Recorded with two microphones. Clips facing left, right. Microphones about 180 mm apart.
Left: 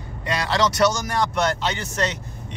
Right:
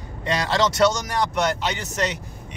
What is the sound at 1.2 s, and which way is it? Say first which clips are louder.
Speech: even; 15° right (ahead or behind).